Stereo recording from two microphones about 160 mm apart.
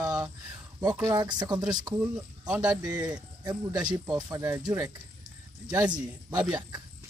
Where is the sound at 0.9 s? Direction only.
20° right (ahead or behind).